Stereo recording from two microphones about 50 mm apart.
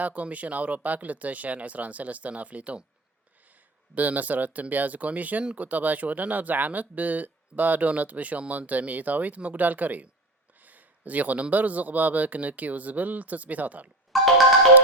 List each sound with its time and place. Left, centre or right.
0.0 s speech: right
14.1 s music: centre